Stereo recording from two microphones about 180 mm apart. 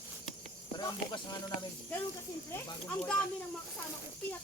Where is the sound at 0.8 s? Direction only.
25° left (ahead or behind).